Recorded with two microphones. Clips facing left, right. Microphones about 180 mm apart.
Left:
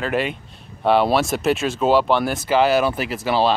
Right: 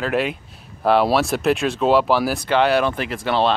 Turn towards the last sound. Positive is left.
turn(degrees=5)  # may be behind; listen again after turning